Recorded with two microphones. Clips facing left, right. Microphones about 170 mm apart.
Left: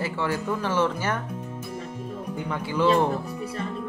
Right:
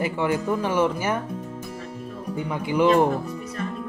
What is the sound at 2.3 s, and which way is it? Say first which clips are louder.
Speech: right 5 dB; 15° right (ahead or behind).